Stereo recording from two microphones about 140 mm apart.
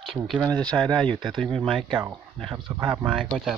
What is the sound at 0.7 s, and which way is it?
Speech, 35° right (ahead or behind).